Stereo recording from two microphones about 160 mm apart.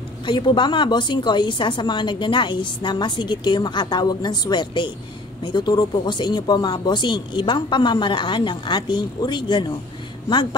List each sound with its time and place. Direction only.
0.2 s a woman's voice: 30° left (ahead or behind)